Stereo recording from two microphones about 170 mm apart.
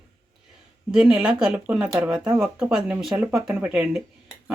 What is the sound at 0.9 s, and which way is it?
Speech, 5° right (ahead or behind).